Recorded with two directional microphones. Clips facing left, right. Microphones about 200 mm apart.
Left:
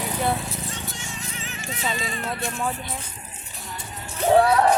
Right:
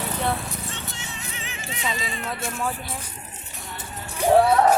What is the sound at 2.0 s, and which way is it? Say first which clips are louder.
Speech: left 1 dB; 45° left (ahead or behind).